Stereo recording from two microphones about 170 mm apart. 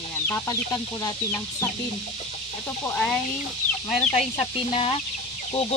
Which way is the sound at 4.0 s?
40° left (ahead or behind).